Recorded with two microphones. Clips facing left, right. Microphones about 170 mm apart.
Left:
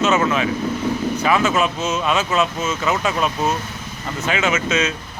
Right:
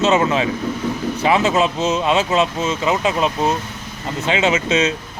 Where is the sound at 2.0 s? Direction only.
25° right (ahead or behind).